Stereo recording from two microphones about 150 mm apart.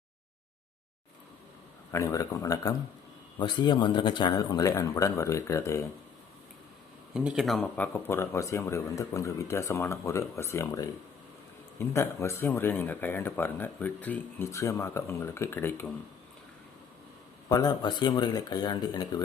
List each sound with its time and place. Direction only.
1.9 s speech: 20° left (ahead or behind)
7.1 s a man's voice: 5° right (ahead or behind); by 15.9 s 15° left (ahead or behind)
17.5 s speech: 25° left (ahead or behind)